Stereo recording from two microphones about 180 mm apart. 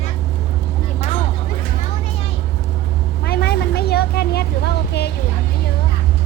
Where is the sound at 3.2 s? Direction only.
60° left (ahead or behind).